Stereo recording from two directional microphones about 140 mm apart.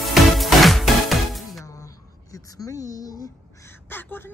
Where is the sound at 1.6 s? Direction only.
25° left (ahead or behind).